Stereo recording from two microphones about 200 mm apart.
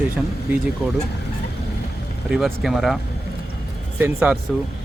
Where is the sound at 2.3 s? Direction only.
Centre (ahead or behind).